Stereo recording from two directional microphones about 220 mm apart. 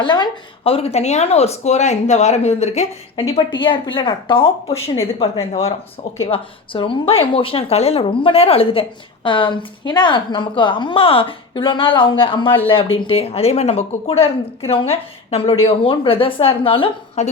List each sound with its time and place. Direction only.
0.0 s a woman's voice: 20° left (ahead or behind)